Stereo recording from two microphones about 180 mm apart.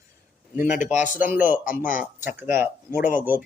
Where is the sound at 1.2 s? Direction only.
10° right (ahead or behind).